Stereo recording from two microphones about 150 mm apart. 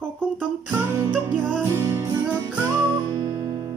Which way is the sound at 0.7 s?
15° right (ahead or behind).